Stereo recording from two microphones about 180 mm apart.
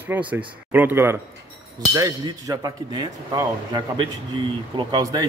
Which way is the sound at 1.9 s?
20° right (ahead or behind).